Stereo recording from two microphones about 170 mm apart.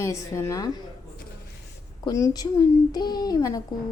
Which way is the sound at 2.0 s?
20° left (ahead or behind).